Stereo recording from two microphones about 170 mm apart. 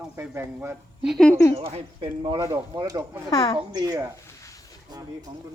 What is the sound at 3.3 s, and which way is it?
Speech, 30° left (ahead or behind).